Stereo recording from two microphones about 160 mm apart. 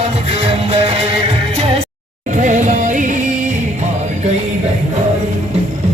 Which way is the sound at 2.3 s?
50° right (ahead or behind).